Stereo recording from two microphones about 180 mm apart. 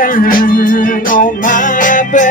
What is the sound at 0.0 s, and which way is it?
Music, 50° left (ahead or behind).